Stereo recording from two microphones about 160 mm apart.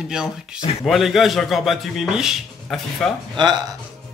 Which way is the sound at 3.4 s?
25° right (ahead or behind).